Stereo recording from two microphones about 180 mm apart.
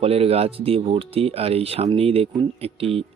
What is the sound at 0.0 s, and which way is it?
Speech, 35° right (ahead or behind).